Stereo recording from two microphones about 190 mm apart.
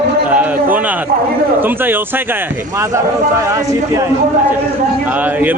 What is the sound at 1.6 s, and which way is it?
Speech, 10° right (ahead or behind).